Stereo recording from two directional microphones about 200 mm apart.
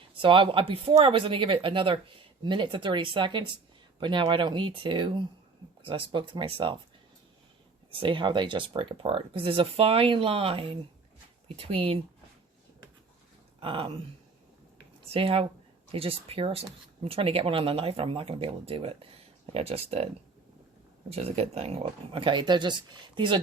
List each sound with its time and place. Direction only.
0.2 s speech: 25° right (ahead or behind)
7.9 s speech: 25° right (ahead or behind)
13.6 s speech: 25° right (ahead or behind)
15.1 s speech: 30° right (ahead or behind)
21.1 s speech: 30° right (ahead or behind)